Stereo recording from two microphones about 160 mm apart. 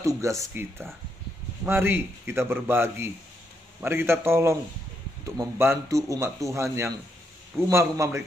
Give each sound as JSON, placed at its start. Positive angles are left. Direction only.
{"t": 0.0, "sound": "a man's voice", "side_deg": -20}